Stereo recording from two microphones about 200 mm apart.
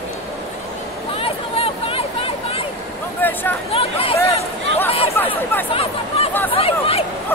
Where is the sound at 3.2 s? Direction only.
10° left (ahead or behind).